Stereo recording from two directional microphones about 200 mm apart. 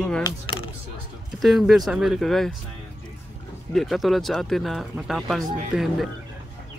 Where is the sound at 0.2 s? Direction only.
20° left (ahead or behind).